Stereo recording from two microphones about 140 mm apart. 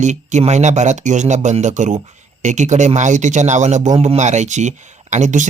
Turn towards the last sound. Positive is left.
turn(degrees=-60)  # may be behind; listen again after turning